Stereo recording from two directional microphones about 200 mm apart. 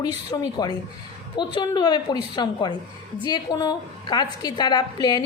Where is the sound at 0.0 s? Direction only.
20° left (ahead or behind).